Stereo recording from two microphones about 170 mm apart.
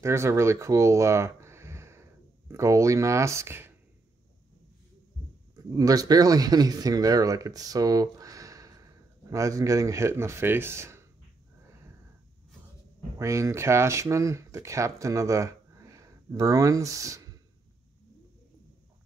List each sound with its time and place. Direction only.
0.0 s speech: 15° right (ahead or behind)
5.7 s speech: 20° right (ahead or behind)
13.2 s speech: 15° right (ahead or behind)